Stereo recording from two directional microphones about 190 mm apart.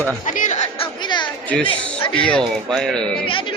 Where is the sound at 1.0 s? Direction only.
25° left (ahead or behind).